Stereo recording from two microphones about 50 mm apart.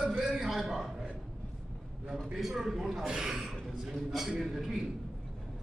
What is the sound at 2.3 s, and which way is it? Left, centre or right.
A man's voice, centre.